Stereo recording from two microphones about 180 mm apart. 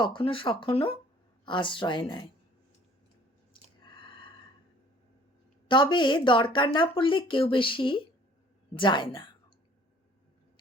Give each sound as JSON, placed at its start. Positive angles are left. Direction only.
{"t": 0.0, "sound": "speech", "side_deg": 30}
{"t": 3.5, "sound": "a sound", "side_deg": 25}
{"t": 5.6, "sound": "speech", "side_deg": 25}